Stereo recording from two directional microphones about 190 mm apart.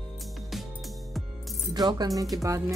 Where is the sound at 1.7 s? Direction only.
20° right (ahead or behind).